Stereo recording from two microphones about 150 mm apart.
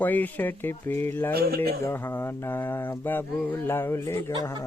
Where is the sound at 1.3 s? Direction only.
90° right.